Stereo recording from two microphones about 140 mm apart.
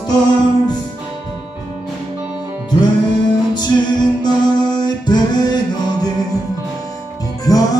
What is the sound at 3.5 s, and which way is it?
Music, 30° left (ahead or behind).